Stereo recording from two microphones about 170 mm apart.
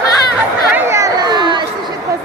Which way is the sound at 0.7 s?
15° right (ahead or behind).